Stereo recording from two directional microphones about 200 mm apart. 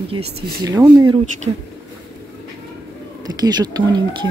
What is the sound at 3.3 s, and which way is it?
Speech, 20° right (ahead or behind).